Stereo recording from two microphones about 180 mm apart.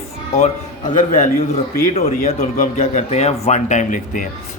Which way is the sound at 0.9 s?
45° left (ahead or behind).